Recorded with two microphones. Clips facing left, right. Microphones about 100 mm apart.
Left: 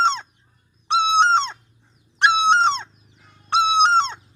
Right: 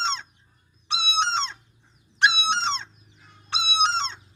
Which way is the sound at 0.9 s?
50° left (ahead or behind).